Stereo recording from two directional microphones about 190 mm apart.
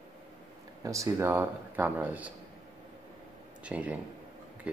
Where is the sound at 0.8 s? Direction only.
15° right (ahead or behind).